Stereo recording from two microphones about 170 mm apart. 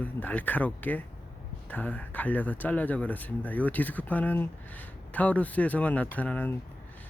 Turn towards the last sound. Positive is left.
turn(degrees=10)  # may be behind; listen again after turning